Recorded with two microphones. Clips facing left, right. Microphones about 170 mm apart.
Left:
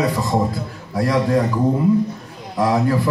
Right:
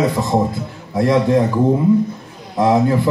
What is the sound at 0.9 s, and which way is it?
Speech, 25° right (ahead or behind).